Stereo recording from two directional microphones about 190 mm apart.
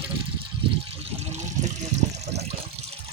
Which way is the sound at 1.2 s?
35° right (ahead or behind).